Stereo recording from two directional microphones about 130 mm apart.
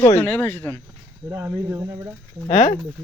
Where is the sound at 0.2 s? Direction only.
15° left (ahead or behind).